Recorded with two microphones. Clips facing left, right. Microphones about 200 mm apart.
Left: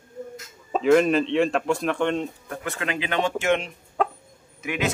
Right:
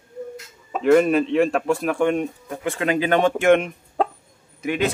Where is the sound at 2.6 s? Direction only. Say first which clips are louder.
Right 8 dB; 35° right (ahead or behind); by 3.7 s 55° right (ahead or behind).